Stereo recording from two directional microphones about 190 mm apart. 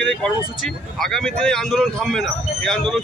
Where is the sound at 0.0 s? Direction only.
5° left (ahead or behind).